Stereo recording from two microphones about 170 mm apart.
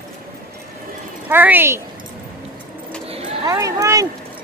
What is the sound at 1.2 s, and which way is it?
Speech, 10° right (ahead or behind).